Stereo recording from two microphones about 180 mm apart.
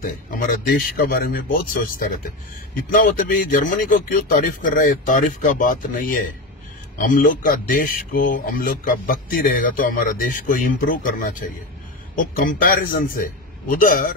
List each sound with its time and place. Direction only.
0.0 s speech: 55° left (ahead or behind)
12.4 s speech: 50° left (ahead or behind)